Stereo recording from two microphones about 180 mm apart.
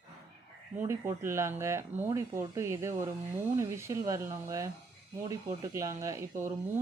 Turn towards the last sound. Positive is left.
turn(degrees=-15)  # may be behind; listen again after turning